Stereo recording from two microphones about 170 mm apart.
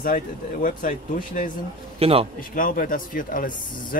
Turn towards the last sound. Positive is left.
turn(degrees=55)  # may be behind; listen again after turning